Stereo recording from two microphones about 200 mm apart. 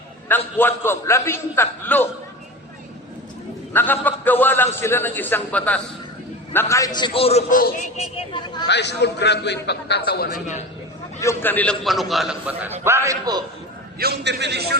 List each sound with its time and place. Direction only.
0.3 s a man's voice: 10° left (ahead or behind)
3.7 s a man's voice: 10° left (ahead or behind); by 7.4 s 30° left (ahead or behind)
7.5 s speech: 40° left (ahead or behind)
8.6 s a man's voice: 60° left (ahead or behind)
10.3 s speech: 40° left (ahead or behind)
11.2 s a man's voice: 10° left (ahead or behind); by 13.4 s 15° right (ahead or behind)
14.0 s a man's voice: 55° right (ahead or behind)